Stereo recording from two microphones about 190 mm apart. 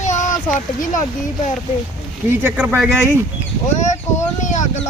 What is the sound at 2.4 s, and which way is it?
Speech, 10° right (ahead or behind).